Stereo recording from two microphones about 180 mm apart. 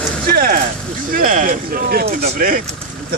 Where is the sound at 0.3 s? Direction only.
55° right (ahead or behind).